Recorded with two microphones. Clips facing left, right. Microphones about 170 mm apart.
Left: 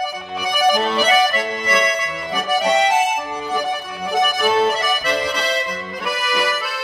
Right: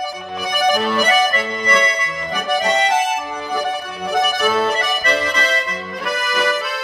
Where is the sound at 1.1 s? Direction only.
10° left (ahead or behind).